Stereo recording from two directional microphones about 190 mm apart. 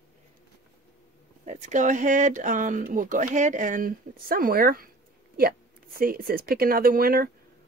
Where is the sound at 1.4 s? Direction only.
40° right (ahead or behind).